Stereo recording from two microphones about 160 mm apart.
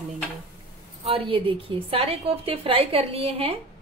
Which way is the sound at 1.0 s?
35° right (ahead or behind).